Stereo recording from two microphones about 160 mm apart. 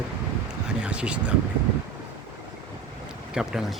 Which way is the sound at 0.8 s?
5° right (ahead or behind).